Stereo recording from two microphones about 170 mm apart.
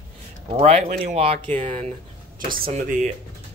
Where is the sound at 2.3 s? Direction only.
55° right (ahead or behind).